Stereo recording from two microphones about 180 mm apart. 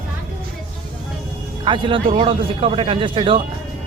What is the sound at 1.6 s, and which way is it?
Speech, 25° right (ahead or behind).